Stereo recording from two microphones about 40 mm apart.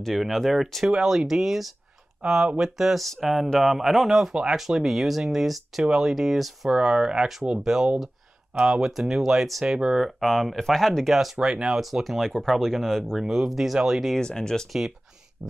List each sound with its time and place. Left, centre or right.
0.0 s speech: centre
1.0 s speech: centre
4.3 s speech: centre
6.7 s speech: centre
10.2 s speech: centre
11.3 s speech: centre
11.8 s speech: centre
14.2 s speech: centre